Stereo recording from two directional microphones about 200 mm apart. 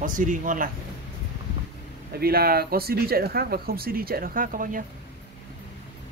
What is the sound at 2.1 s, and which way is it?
Speech, 50° right (ahead or behind).